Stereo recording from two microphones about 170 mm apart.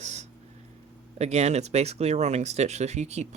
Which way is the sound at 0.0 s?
40° right (ahead or behind).